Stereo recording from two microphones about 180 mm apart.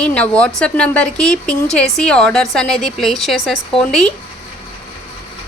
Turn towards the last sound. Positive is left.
turn(degrees=5)  # may be behind; listen again after turning